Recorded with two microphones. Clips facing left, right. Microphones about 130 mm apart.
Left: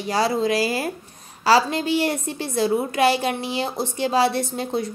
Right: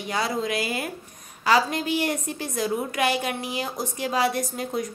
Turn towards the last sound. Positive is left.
turn(degrees=30)  # may be behind; listen again after turning